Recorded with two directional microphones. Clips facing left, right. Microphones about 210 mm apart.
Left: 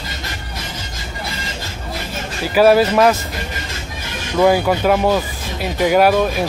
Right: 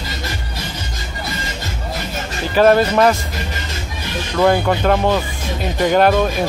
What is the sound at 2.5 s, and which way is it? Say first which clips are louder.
Speech: left 1 dB; 5° left (ahead or behind).